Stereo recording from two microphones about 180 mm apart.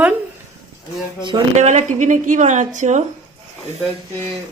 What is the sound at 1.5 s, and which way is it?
Speech, 40° right (ahead or behind).